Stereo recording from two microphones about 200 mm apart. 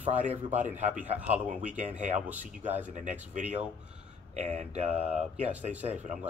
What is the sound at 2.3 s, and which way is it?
Speech, 10° right (ahead or behind).